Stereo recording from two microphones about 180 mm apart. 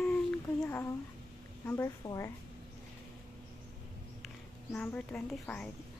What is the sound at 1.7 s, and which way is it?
Speech, 15° left (ahead or behind).